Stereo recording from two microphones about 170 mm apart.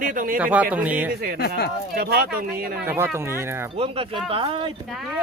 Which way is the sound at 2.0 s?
60° right (ahead or behind).